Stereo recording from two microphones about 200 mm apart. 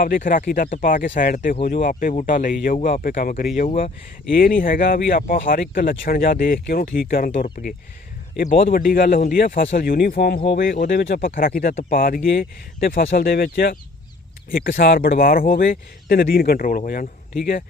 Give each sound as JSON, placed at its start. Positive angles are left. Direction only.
{"t": 0.0, "sound": "speech", "side_deg": 45}
{"t": 8.7, "sound": "speech", "side_deg": 45}